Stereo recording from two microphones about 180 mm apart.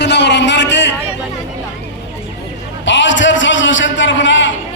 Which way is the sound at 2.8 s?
90° left.